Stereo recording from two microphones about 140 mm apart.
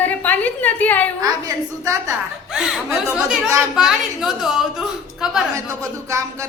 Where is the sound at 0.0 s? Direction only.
10° left (ahead or behind).